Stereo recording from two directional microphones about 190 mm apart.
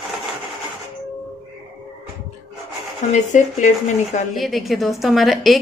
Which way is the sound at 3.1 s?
40° left (ahead or behind).